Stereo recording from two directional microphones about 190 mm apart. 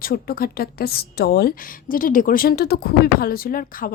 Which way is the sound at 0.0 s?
50° left (ahead or behind).